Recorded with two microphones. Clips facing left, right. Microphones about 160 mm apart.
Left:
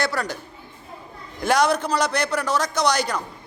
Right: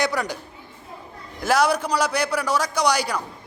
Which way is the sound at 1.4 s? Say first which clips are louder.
Even; 5° right (ahead or behind).